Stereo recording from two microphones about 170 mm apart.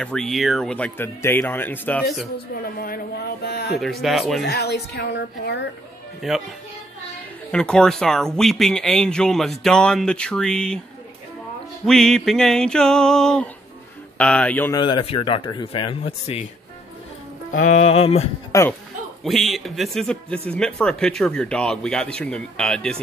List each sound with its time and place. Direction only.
0.0 s speech: 5° left (ahead or behind)
2.3 s a woman's voice: 60° left (ahead or behind)
3.8 s speech: centre (ahead or behind)
4.5 s a woman's voice: 75° left (ahead or behind)
6.2 s speech: centre (ahead or behind)
7.5 s speech: 5° left (ahead or behind)
11.8 s speech: 5° left (ahead or behind)
14.7 s speech: 25° left (ahead or behind)
17.5 s speech: 50° left (ahead or behind)
18.5 s speech: 15° left (ahead or behind)
19.2 s speech: centre (ahead or behind)